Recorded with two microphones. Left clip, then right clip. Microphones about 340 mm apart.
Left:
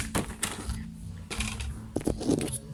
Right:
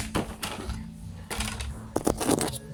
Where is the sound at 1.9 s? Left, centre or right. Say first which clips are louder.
Right 4 dB; right.